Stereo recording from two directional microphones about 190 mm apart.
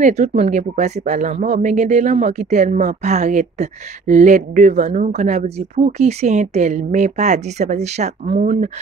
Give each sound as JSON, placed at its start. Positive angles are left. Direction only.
{"t": 0.0, "sound": "speech", "side_deg": -35}